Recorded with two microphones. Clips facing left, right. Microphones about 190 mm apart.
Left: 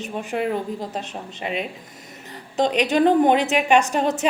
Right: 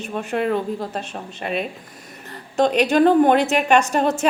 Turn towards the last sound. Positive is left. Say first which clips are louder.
# right 1 dB
turn(degrees=15)  # may be behind; listen again after turning